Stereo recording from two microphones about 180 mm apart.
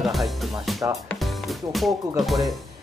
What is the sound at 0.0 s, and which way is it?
Music, centre (ahead or behind).